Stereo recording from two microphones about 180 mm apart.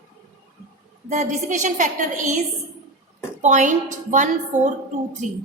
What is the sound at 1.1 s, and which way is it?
A woman's voice, 45° right (ahead or behind).